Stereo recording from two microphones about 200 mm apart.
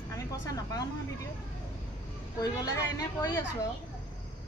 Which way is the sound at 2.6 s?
15° left (ahead or behind).